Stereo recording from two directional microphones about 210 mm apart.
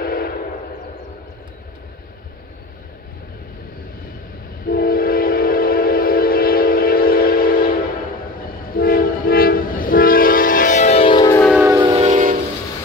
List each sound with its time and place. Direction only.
0.0 s train: 45° left (ahead or behind)
4.6 s train: 45° left (ahead or behind); by 11.4 s 20° left (ahead or behind)
11.8 s music: 30° right (ahead or behind)